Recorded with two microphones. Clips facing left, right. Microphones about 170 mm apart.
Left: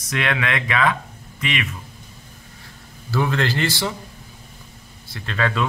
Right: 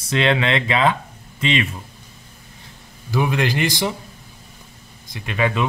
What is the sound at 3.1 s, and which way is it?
Speech, 15° right (ahead or behind).